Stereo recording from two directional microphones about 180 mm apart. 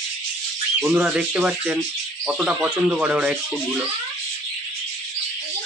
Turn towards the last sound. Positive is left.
turn(degrees=-10)  # may be behind; listen again after turning